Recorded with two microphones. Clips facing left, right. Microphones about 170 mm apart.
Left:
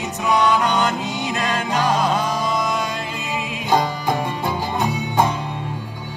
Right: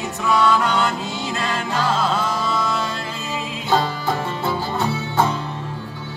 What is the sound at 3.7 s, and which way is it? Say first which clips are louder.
Music: left 1 dB; 15° left (ahead or behind).